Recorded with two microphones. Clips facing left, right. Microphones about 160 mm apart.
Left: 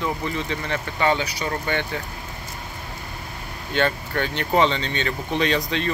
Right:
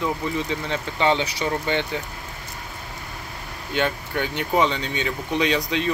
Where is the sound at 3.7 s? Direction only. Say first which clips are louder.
Left 1 dB; 10° right (ahead or behind).